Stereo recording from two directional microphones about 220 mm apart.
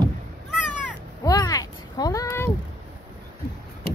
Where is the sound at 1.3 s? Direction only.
15° left (ahead or behind).